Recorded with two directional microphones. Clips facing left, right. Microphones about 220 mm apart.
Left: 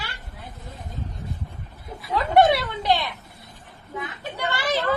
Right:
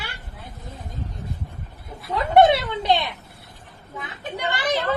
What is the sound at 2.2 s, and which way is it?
Speech, 25° right (ahead or behind).